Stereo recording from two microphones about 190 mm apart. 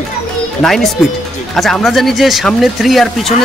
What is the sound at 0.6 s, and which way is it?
A woman's voice, centre (ahead or behind).